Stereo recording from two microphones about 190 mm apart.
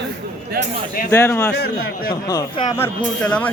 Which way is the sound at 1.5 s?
55° left (ahead or behind).